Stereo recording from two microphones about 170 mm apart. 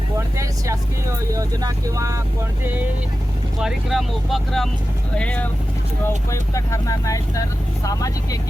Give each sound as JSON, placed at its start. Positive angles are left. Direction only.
{"t": 1.3, "sound": "speech", "side_deg": -20}
{"t": 3.6, "sound": "speech", "side_deg": -5}